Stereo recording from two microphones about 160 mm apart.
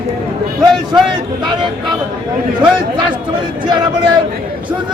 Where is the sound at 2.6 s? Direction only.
30° right (ahead or behind).